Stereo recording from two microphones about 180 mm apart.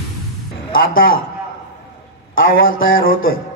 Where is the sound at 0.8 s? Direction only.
50° left (ahead or behind).